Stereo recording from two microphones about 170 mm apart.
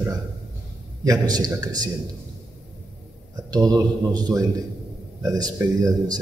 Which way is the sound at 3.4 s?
25° right (ahead or behind).